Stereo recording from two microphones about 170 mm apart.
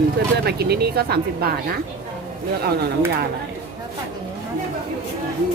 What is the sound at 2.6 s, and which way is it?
Speech, 70° right (ahead or behind).